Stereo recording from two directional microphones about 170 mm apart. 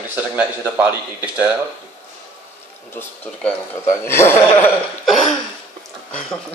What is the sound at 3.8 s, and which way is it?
Speech, 15° left (ahead or behind).